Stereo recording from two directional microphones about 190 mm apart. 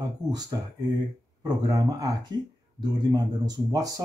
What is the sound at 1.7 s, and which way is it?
Speech, 20° right (ahead or behind).